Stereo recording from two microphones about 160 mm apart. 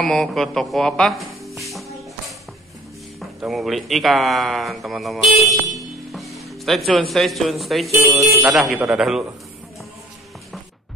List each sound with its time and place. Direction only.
0.0 s speech: centre (ahead or behind)
1.6 s music: centre (ahead or behind)
3.2 s speech: centre (ahead or behind)
7.9 s speech: 20° right (ahead or behind)
8.5 s speech: centre (ahead or behind)